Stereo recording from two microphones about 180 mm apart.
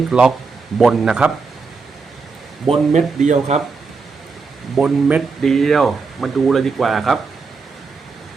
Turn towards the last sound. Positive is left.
turn(degrees=0)  # may be behind; listen again after turning